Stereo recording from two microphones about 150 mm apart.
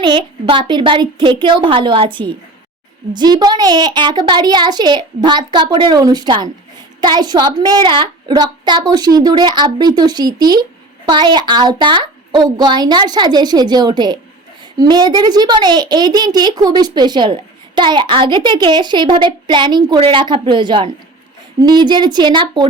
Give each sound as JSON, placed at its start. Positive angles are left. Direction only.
{"t": 0.0, "sound": "a woman's voice", "side_deg": -35}